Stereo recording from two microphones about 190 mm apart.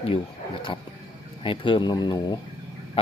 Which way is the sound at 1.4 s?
25° left (ahead or behind).